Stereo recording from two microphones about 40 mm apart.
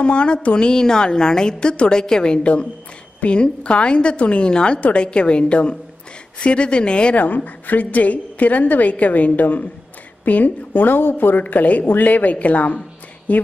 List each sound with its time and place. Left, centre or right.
0.0 s a woman's voice: left
7.2 s a woman's voice: left
11.0 s a woman's voice: left